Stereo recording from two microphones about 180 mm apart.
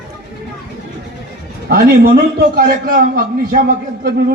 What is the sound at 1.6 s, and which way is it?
A man's voice, 60° right (ahead or behind).